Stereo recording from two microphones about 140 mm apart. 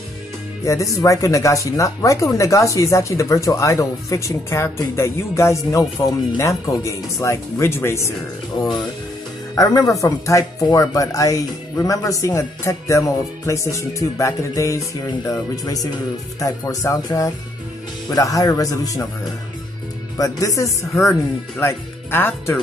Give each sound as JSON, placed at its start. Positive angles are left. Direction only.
{"t": 0.7, "sound": "speech", "side_deg": 20}
{"t": 9.6, "sound": "speech", "side_deg": 25}
{"t": 20.2, "sound": "speech", "side_deg": 25}